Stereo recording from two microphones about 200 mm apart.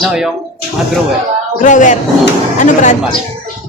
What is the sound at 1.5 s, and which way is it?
Speech, 40° left (ahead or behind).